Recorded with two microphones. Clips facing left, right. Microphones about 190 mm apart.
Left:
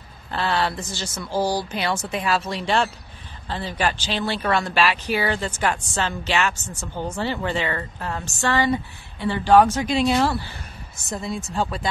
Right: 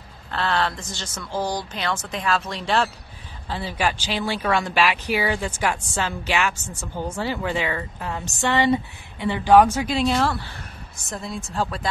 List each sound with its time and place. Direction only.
0.3 s speech: 10° left (ahead or behind)